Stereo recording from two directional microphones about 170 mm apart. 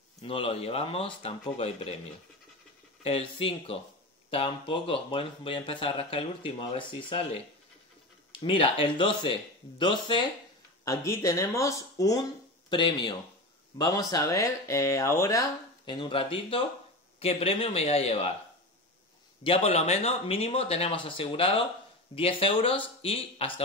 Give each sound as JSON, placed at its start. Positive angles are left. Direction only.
{"t": 0.2, "sound": "speech", "side_deg": 30}
{"t": 3.0, "sound": "speech", "side_deg": 35}
{"t": 8.4, "sound": "speech", "side_deg": 30}
{"t": 19.4, "sound": "speech", "side_deg": 35}